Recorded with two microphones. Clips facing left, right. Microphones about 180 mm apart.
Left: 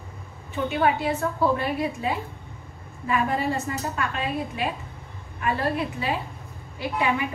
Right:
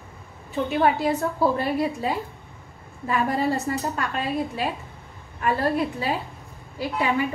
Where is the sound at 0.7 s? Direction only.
35° right (ahead or behind).